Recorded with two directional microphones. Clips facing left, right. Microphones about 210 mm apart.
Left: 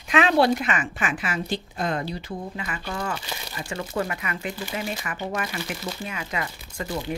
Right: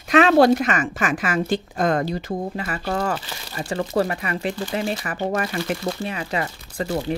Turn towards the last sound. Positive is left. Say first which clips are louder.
# right 6 dB
turn(degrees=-35)  # may be behind; listen again after turning